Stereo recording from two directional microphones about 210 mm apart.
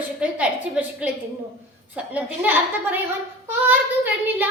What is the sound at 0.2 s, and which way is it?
Speech, 5° right (ahead or behind).